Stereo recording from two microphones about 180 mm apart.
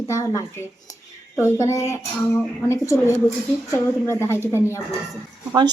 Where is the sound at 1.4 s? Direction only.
15° left (ahead or behind).